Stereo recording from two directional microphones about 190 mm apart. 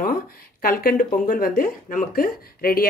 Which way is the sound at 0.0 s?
50° left (ahead or behind).